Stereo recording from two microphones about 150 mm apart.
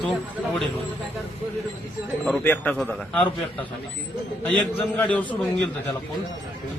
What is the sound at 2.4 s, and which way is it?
Speech, 10° left (ahead or behind).